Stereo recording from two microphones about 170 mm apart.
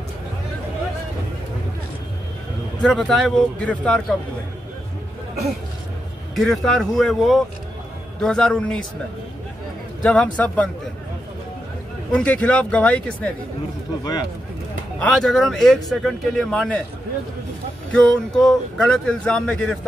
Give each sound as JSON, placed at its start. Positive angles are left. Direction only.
{"t": 2.8, "sound": "speech", "side_deg": 5}
{"t": 6.3, "sound": "speech", "side_deg": 0}
{"t": 10.0, "sound": "speech", "side_deg": 5}
{"t": 12.1, "sound": "speech", "side_deg": 5}
{"t": 15.0, "sound": "speech", "side_deg": 5}
{"t": 17.9, "sound": "speech", "side_deg": 5}